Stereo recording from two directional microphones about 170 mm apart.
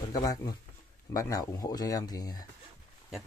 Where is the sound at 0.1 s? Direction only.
20° left (ahead or behind).